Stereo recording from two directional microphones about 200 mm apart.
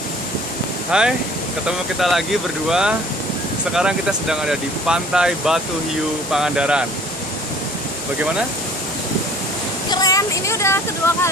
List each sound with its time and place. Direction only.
0.9 s speech: 5° right (ahead or behind)
9.8 s a sound: 20° left (ahead or behind)
11.0 s speech: 15° left (ahead or behind)